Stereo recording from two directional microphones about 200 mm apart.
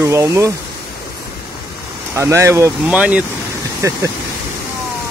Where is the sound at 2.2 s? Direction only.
15° right (ahead or behind).